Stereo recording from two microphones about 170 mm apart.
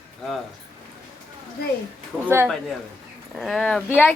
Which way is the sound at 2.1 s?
Centre (ahead or behind).